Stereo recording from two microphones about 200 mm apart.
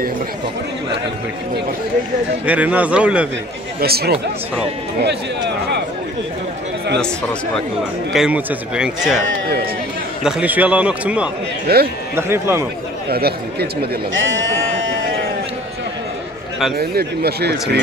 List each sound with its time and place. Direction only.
2.4 s speech: 5° right (ahead or behind)
3.8 s speech: 50° right (ahead or behind)
8.1 s a man's voice: 5° right (ahead or behind)
10.2 s speech: 5° right (ahead or behind)
11.6 s speech: 50° right (ahead or behind)
12.2 s speech: 10° right (ahead or behind)
13.1 s speech: 50° right (ahead or behind)
14.1 s sheep: 70° right (ahead or behind)
16.7 s speech: 50° right (ahead or behind)